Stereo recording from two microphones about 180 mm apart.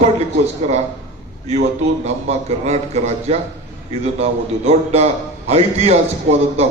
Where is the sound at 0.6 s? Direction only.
35° right (ahead or behind).